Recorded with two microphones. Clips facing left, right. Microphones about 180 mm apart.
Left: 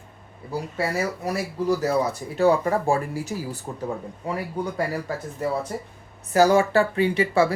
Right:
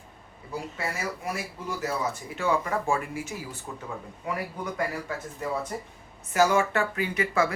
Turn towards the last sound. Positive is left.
turn(degrees=30)  # may be behind; listen again after turning